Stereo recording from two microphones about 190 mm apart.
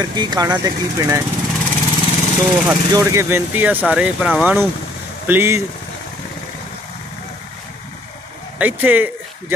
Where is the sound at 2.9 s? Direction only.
15° right (ahead or behind).